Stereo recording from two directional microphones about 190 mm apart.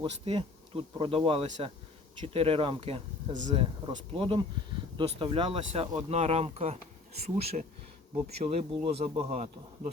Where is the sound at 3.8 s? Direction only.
25° right (ahead or behind).